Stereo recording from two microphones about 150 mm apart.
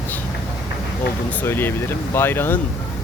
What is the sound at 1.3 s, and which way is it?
Speech, 15° left (ahead or behind).